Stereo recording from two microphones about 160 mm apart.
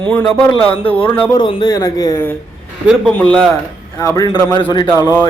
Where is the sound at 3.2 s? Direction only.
5° left (ahead or behind).